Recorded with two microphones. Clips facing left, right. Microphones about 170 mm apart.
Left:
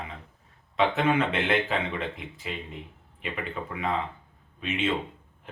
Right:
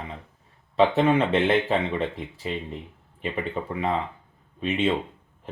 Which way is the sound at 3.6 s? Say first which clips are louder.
Right 2 dB; 30° right (ahead or behind).